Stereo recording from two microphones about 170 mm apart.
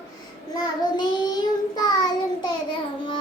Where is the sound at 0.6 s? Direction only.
25° left (ahead or behind).